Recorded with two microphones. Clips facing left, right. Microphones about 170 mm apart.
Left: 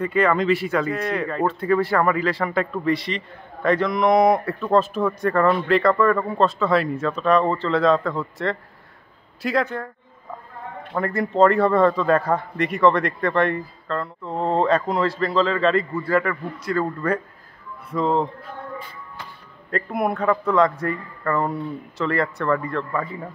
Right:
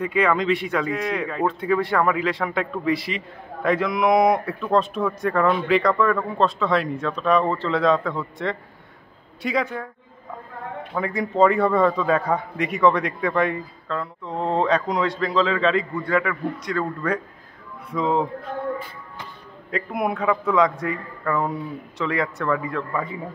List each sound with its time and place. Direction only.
0.0 s speech: centre (ahead or behind)
19.7 s speech: centre (ahead or behind)